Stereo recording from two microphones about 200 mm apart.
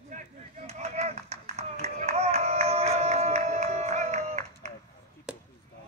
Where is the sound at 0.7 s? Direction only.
35° right (ahead or behind).